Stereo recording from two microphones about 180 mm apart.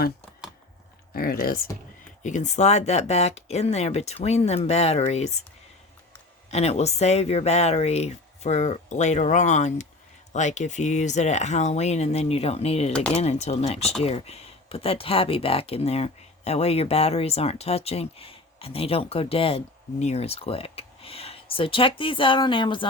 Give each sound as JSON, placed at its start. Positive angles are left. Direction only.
{"t": 1.1, "sound": "speech", "side_deg": 55}
{"t": 2.2, "sound": "speech", "side_deg": 40}
{"t": 6.5, "sound": "speech", "side_deg": 35}